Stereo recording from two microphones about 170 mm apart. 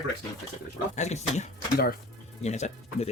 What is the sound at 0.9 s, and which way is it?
A man's voice, 40° left (ahead or behind).